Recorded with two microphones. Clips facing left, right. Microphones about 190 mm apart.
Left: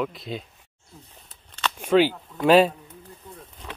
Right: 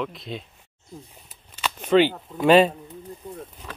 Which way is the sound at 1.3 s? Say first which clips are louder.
Left 1 dB; 10° right (ahead or behind).